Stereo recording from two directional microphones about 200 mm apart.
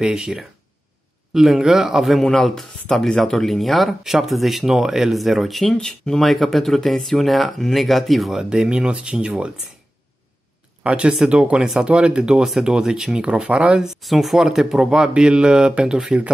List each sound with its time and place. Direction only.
0.0 s speech: 5° right (ahead or behind)
10.8 s speech: 5° right (ahead or behind)